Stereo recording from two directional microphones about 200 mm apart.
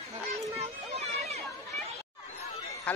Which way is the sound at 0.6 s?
30° right (ahead or behind).